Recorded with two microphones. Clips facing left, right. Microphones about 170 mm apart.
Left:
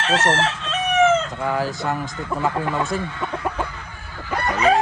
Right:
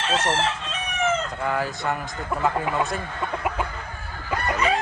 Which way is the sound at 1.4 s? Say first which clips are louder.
Left 3 dB; centre (ahead or behind).